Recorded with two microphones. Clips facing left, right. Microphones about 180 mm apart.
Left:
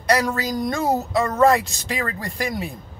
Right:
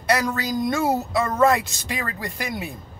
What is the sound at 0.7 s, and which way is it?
Speech, centre (ahead or behind).